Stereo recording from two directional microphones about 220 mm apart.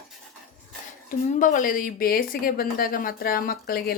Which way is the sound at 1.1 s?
35° left (ahead or behind).